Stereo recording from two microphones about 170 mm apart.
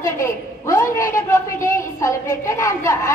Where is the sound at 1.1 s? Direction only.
20° left (ahead or behind).